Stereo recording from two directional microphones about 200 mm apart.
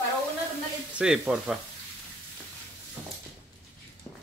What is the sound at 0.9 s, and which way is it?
Speech, 5° right (ahead or behind).